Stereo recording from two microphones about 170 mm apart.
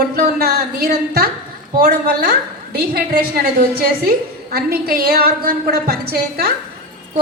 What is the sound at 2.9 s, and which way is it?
A woman's voice, 60° right (ahead or behind).